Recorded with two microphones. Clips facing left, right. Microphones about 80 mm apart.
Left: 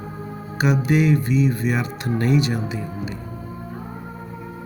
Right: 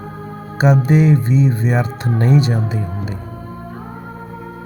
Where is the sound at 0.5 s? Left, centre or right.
Right.